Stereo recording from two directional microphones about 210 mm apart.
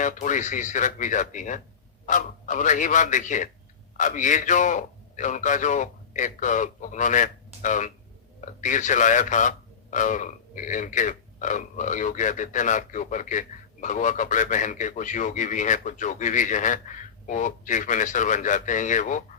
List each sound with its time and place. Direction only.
0.0 s a man's voice: 35° left (ahead or behind)